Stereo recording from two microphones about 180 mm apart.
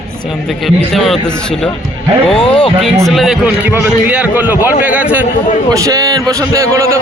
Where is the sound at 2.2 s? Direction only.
30° left (ahead or behind).